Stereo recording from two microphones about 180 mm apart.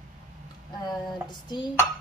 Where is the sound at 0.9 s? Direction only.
25° left (ahead or behind).